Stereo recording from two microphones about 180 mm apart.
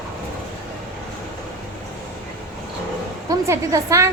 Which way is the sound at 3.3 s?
15° right (ahead or behind).